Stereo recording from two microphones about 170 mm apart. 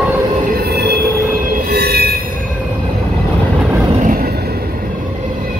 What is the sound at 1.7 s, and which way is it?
Train wheels squealing, 70° right (ahead or behind).